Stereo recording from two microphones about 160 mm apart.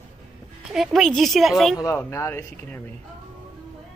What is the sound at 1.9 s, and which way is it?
Speech, 15° left (ahead or behind).